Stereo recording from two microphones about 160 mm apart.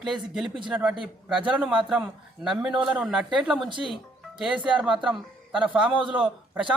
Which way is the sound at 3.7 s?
30° right (ahead or behind).